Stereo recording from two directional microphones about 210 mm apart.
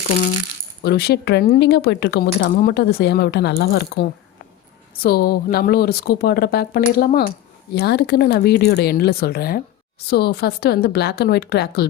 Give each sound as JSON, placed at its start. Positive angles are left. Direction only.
{"t": 0.8, "sound": "speech", "side_deg": 50}